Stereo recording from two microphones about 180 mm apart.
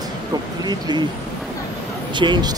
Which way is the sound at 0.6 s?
25° right (ahead or behind).